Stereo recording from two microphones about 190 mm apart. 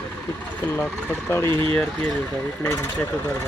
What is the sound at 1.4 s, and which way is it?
Speech, 25° right (ahead or behind).